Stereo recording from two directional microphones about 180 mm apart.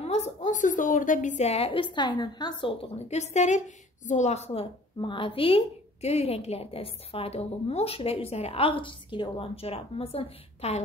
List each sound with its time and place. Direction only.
0.0 s a woman's voice: 40° left (ahead or behind)